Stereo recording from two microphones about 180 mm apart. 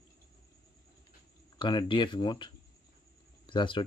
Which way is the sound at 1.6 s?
25° left (ahead or behind).